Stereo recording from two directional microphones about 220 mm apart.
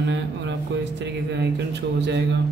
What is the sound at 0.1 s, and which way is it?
Speech, 55° right (ahead or behind).